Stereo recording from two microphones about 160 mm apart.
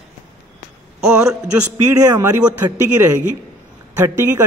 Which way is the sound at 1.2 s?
20° right (ahead or behind).